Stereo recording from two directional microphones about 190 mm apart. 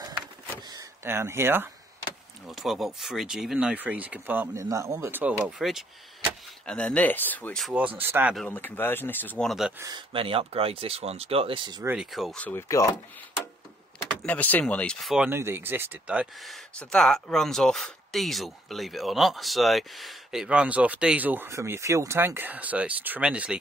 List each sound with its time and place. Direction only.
0.6 s vehicle: 20° right (ahead or behind)
2.5 s speech: centre (ahead or behind)
8.4 s speech: 10° left (ahead or behind)
9.8 s speech: 20° right (ahead or behind)
11.8 s speech: 5° right (ahead or behind); by 12.8 s 15° left (ahead or behind)
14.2 s speech: 10° left (ahead or behind)